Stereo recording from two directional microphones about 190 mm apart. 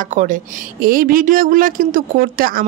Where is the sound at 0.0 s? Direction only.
40° right (ahead or behind).